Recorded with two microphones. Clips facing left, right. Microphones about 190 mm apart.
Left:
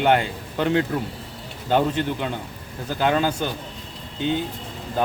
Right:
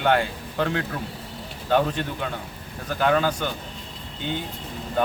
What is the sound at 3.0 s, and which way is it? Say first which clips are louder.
Speech: even; 25° left (ahead or behind).